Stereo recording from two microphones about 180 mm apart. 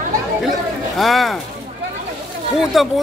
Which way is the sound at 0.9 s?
Centre (ahead or behind).